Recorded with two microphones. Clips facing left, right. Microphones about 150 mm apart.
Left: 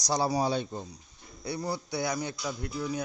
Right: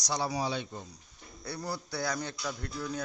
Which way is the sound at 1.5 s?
20° left (ahead or behind).